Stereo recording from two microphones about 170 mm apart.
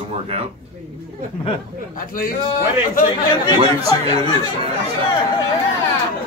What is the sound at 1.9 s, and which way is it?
Speech, 55° left (ahead or behind).